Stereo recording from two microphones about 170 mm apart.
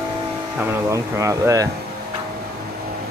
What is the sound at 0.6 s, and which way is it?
Speech, 15° right (ahead or behind).